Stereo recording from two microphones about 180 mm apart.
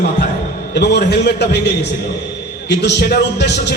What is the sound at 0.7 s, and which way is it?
Speech, 70° left (ahead or behind).